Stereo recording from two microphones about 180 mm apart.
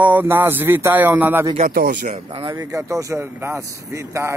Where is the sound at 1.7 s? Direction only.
60° right (ahead or behind).